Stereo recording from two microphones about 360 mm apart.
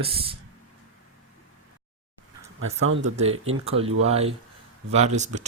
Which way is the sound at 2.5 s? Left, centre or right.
Right.